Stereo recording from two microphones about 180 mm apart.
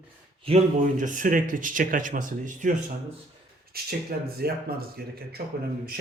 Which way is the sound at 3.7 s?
55° right (ahead or behind).